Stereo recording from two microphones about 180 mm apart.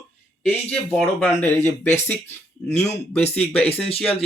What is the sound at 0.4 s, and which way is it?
Speech, 5° left (ahead or behind).